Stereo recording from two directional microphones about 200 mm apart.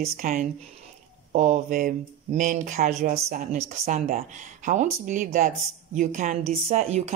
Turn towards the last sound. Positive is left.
turn(degrees=-35)  # may be behind; listen again after turning